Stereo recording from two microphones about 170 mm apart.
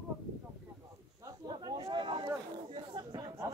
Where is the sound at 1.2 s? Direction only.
25° right (ahead or behind).